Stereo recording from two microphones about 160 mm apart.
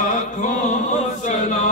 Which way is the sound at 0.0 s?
55° left (ahead or behind).